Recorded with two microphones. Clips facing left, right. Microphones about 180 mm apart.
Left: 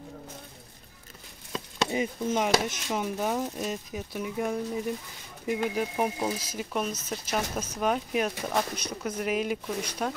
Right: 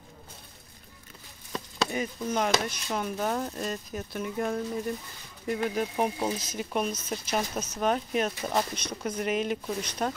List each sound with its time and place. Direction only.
1.5 s chopping: 20° left (ahead or behind)
2.3 s speech: 5° left (ahead or behind)